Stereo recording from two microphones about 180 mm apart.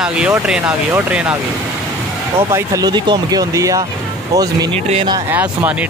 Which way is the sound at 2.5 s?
15° right (ahead or behind).